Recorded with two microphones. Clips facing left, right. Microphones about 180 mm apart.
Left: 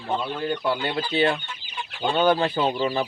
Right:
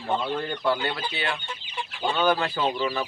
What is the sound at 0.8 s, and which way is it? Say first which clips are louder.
Speech: left 7 dB; 25° left (ahead or behind).